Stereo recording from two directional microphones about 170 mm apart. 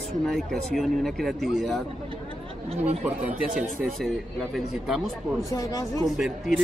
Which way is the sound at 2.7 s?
35° right (ahead or behind).